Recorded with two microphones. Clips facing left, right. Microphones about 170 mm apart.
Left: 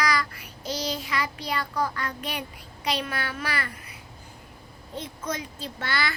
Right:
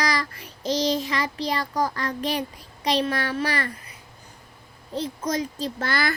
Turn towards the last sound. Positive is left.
turn(degrees=-45)  # may be behind; listen again after turning